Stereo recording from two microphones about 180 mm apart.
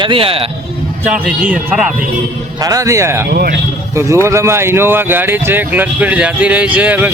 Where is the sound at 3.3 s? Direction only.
60° right (ahead or behind).